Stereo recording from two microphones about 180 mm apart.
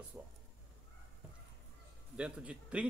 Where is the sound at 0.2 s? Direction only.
15° right (ahead or behind).